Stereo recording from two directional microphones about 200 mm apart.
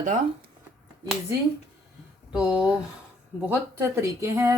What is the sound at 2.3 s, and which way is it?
Speech, 5° right (ahead or behind).